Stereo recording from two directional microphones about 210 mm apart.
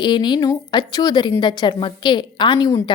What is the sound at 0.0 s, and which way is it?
A woman's voice, 20° left (ahead or behind).